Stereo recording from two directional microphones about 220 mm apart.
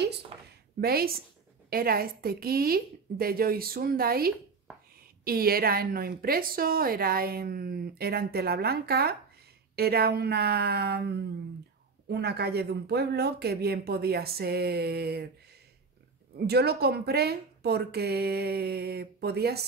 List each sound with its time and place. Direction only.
0.7 s a woman's voice: 45° right (ahead or behind)
16.3 s a woman's voice: 45° right (ahead or behind)